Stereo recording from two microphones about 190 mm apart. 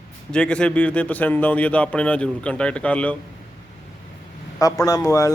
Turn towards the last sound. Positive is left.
turn(degrees=20)  # may be behind; listen again after turning